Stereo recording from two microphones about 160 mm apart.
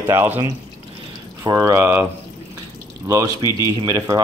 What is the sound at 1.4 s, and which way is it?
Speech, 20° right (ahead or behind).